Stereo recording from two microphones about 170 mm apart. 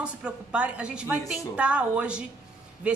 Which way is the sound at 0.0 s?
5° right (ahead or behind).